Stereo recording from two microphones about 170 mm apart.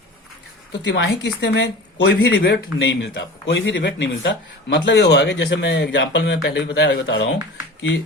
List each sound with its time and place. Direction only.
0.9 s speech: 90° left